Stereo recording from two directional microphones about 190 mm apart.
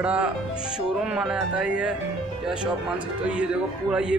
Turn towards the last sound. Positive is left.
turn(degrees=-5)  # may be behind; listen again after turning